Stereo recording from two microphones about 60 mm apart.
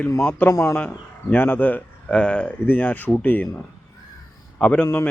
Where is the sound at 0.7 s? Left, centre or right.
Left.